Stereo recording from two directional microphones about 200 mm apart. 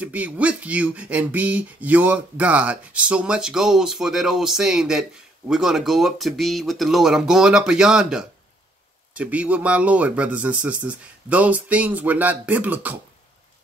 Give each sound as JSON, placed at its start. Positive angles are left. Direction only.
{"t": 0.0, "sound": "speech", "side_deg": -5}